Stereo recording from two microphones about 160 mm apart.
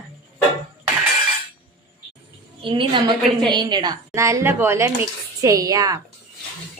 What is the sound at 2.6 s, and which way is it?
Speech, 30° right (ahead or behind).